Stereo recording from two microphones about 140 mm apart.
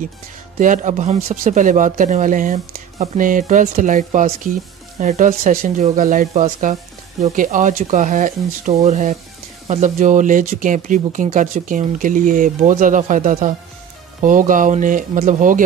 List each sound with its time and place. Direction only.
0.6 s speech: 65° right (ahead or behind)